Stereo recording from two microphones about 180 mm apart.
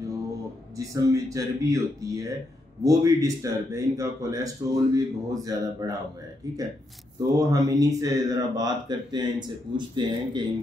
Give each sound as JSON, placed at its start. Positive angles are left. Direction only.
{"t": 0.7, "sound": "speech", "side_deg": -20}
{"t": 7.2, "sound": "speech", "side_deg": -20}